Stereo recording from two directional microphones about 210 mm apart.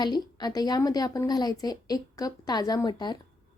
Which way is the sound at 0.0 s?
20° left (ahead or behind).